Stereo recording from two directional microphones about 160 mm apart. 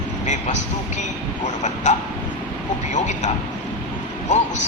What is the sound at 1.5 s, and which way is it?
Speech, 50° left (ahead or behind).